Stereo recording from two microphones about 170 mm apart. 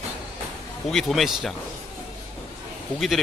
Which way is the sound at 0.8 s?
Centre (ahead or behind).